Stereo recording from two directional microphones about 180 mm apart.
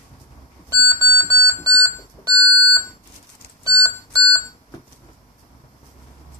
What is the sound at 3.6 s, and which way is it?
Piano, 15° right (ahead or behind).